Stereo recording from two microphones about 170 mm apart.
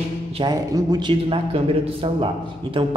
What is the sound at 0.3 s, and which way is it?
A man's voice, 25° right (ahead or behind).